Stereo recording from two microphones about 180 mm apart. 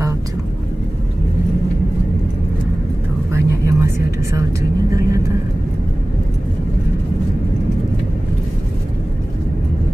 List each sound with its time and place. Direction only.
3.3 s vehicle: 15° right (ahead or behind)